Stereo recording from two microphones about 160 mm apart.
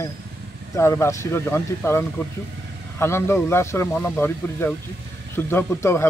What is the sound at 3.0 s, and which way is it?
Speech, 15° left (ahead or behind).